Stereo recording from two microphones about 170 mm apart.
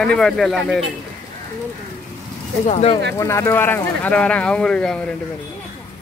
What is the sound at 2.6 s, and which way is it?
Speech, 40° left (ahead or behind).